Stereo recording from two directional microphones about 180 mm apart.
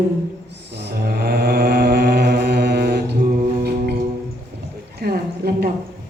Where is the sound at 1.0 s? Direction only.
65° right (ahead or behind).